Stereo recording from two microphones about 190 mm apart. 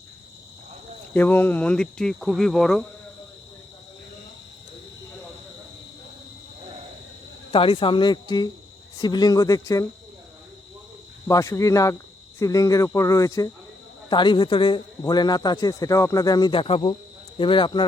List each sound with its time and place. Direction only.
1.1 s speech: 10° left (ahead or behind)
7.5 s speech: 25° left (ahead or behind)
11.3 s cricket: 15° left (ahead or behind)
14.1 s speech: 25° left (ahead or behind)